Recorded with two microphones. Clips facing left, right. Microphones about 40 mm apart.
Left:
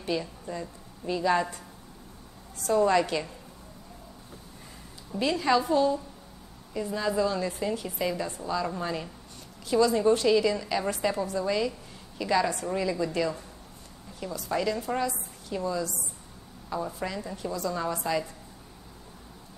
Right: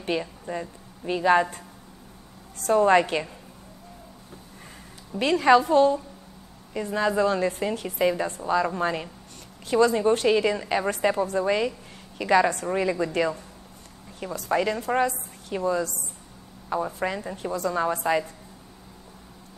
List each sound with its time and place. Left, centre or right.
0.0 s a woman's voice: right
2.6 s a woman's voice: right
5.2 s a woman's voice: right